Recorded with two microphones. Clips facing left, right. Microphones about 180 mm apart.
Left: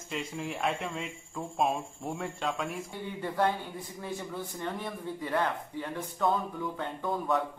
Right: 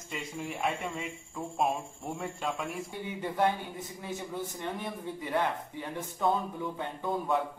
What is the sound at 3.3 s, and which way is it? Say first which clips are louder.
Speech: even; 20° right (ahead or behind).